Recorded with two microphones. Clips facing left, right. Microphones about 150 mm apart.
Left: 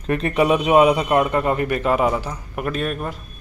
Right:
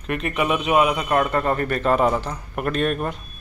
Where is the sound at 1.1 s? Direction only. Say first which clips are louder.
Left 2 dB; 15° left (ahead or behind).